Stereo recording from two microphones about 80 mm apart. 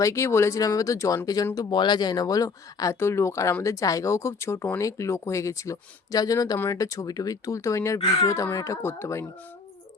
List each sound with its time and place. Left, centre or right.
0.0 s speech: left
1.7 s speech: left
3.0 s speech: left